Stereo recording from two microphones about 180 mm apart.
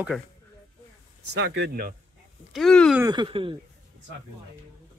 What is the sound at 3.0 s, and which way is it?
Speech, 25° right (ahead or behind).